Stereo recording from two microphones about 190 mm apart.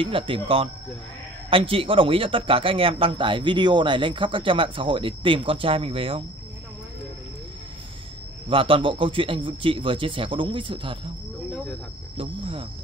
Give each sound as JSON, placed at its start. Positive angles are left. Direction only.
{"t": 0.0, "sound": "a man's voice", "side_deg": -25}
{"t": 8.5, "sound": "a man's voice", "side_deg": -30}
{"t": 12.2, "sound": "cricket", "side_deg": -30}